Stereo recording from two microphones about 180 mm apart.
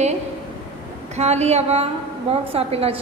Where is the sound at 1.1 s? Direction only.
35° right (ahead or behind).